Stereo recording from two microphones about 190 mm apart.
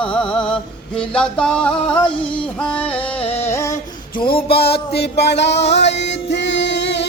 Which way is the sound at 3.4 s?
15° left (ahead or behind).